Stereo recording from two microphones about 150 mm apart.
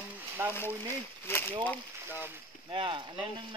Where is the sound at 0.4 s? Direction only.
15° right (ahead or behind).